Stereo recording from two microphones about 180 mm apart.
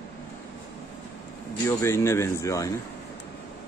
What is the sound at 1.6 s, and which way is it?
A man's voice, 15° left (ahead or behind).